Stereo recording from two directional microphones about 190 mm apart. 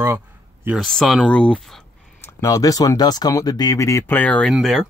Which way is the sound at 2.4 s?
20° left (ahead or behind).